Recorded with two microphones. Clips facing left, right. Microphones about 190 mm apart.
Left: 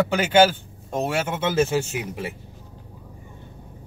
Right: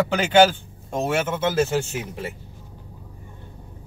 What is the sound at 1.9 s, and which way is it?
Speech, 15° left (ahead or behind).